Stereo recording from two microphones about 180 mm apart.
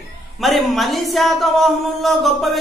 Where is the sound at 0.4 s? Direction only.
Centre (ahead or behind).